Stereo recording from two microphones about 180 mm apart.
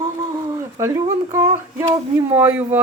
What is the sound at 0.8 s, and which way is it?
A woman's voice, 15° right (ahead or behind).